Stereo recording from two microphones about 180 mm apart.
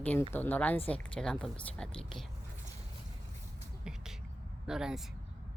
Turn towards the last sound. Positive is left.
turn(degrees=-5)  # may be behind; listen again after turning